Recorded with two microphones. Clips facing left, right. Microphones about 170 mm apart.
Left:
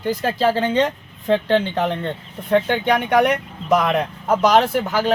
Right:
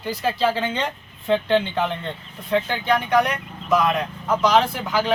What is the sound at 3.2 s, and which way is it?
Speech, 75° left (ahead or behind).